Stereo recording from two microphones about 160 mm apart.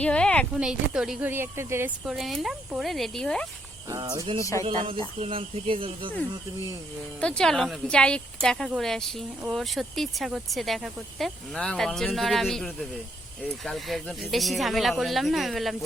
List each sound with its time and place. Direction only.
0.0 s speech: 5° left (ahead or behind)
0.6 s speech: 5° right (ahead or behind)
1.3 s speech: 15° right (ahead or behind)
2.0 s speech: centre (ahead or behind)
3.8 s speech: 20° right (ahead or behind)
5.2 s speech: 35° right (ahead or behind)
7.2 s speech: 5° left (ahead or behind)